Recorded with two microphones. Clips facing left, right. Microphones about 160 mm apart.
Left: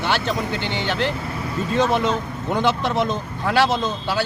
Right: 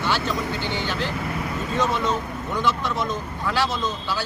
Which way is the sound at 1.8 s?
25° left (ahead or behind).